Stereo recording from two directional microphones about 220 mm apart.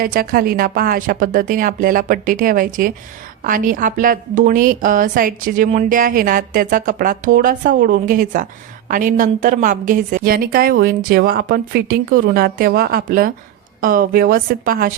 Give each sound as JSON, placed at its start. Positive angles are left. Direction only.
{"t": 0.0, "sound": "a woman's voice", "side_deg": -40}